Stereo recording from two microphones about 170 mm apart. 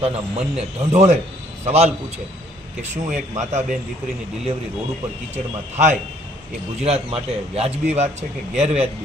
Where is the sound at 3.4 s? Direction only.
45° right (ahead or behind).